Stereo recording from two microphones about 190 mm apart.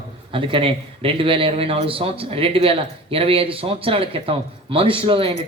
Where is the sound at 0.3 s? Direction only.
25° right (ahead or behind).